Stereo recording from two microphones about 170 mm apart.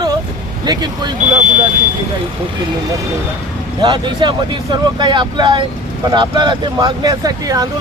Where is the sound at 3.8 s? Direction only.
25° right (ahead or behind).